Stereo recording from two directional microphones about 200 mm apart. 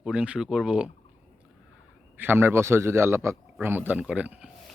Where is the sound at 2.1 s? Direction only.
10° right (ahead or behind).